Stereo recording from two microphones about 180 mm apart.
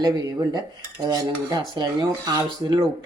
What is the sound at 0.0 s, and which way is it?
Speech, 20° right (ahead or behind).